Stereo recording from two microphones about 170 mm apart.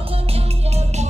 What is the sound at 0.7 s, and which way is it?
Music, 40° right (ahead or behind).